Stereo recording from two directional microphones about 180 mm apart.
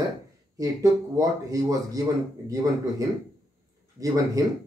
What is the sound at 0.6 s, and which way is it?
Speech, 20° right (ahead or behind).